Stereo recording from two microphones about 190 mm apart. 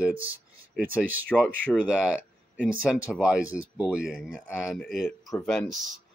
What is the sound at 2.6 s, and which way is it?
Speech, 5° right (ahead or behind).